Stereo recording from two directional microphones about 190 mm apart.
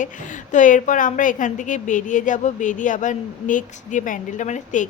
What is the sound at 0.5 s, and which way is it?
A woman's voice, 40° left (ahead or behind).